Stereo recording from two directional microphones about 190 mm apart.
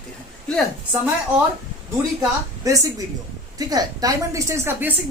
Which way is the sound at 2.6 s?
15° right (ahead or behind).